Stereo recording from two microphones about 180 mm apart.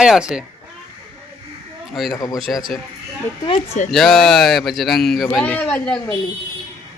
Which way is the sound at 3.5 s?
40° left (ahead or behind).